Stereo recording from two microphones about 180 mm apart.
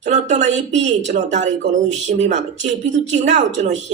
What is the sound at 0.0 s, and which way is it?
A woman's voice, 40° right (ahead or behind).